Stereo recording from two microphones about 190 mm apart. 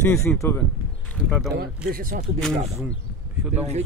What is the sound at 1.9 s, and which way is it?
Speech, 45° right (ahead or behind).